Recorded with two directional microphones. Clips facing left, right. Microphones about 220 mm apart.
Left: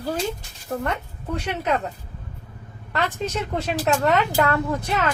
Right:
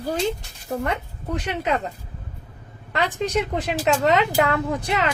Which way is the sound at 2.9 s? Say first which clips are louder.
Right 3 dB; 15° right (ahead or behind).